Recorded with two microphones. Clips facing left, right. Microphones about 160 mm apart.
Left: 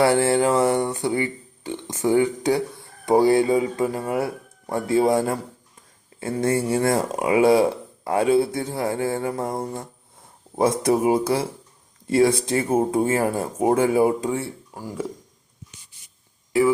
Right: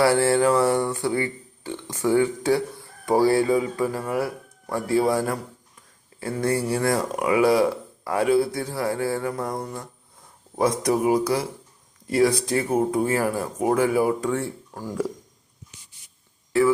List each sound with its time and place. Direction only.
0.0 s speech: 20° left (ahead or behind)
14.3 s speech: 10° left (ahead or behind)
16.5 s a sound: 15° left (ahead or behind)